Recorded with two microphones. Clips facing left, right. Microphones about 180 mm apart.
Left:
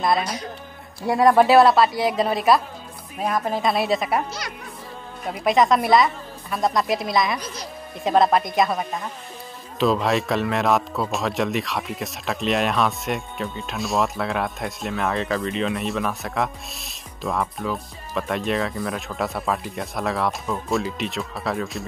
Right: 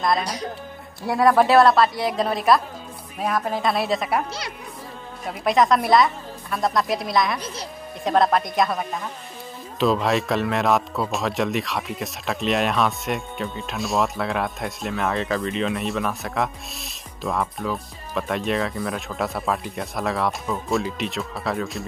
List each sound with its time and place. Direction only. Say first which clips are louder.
0.2 s speech: even; 35° right (ahead or behind)
1.0 s speech: left 2 dB; centre (ahead or behind)
5.2 s speech: left 1 dB; centre (ahead or behind)